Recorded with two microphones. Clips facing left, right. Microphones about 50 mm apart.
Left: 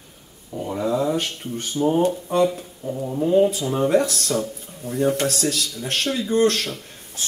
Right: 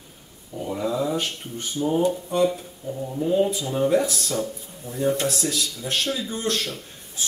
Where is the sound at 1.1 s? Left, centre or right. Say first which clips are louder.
Left 2 dB; left.